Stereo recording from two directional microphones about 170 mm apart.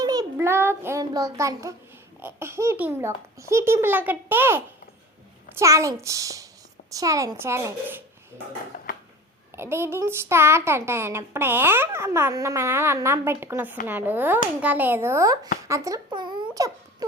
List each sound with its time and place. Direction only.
0.0 s child singing: 20° right (ahead or behind)
2.2 s a child's voice: 15° right (ahead or behind)
9.6 s a child's voice: 15° right (ahead or behind)
15.6 s a sound: 20° right (ahead or behind)